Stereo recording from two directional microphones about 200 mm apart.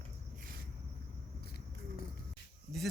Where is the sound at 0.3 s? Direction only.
45° right (ahead or behind).